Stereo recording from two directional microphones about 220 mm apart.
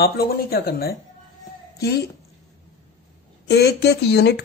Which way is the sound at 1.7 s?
45° left (ahead or behind).